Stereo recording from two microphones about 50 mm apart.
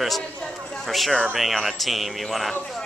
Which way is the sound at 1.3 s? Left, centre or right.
Centre.